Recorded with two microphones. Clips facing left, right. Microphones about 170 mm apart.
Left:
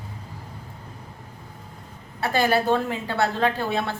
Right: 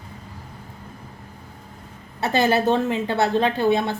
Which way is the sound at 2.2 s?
20° right (ahead or behind).